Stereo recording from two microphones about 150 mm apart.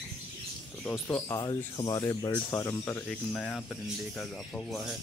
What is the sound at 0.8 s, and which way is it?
Speech, 15° left (ahead or behind).